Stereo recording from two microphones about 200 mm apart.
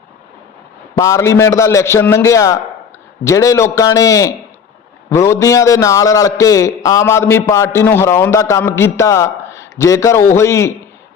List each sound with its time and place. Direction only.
0.9 s a man's voice: 15° left (ahead or behind)